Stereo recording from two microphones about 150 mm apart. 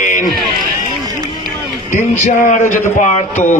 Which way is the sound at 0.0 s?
60° left (ahead or behind).